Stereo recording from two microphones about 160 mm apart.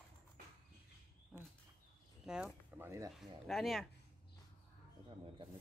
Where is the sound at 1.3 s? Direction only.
5° right (ahead or behind).